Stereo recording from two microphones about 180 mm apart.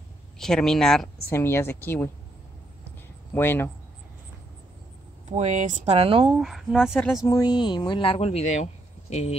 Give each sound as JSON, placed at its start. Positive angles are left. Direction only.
{"t": 0.4, "sound": "speech", "side_deg": 0}
{"t": 1.3, "sound": "a woman's voice", "side_deg": 15}
{"t": 3.3, "sound": "a woman's voice", "side_deg": 10}
{"t": 5.3, "sound": "speech", "side_deg": -40}
{"t": 6.4, "sound": "speech", "side_deg": 0}
{"t": 7.2, "sound": "speech", "side_deg": 20}